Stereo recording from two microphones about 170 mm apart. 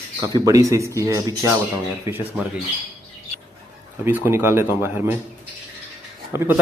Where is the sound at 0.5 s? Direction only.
20° right (ahead or behind).